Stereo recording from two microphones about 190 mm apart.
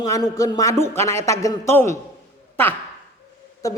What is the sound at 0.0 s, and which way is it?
Speech, 20° left (ahead or behind).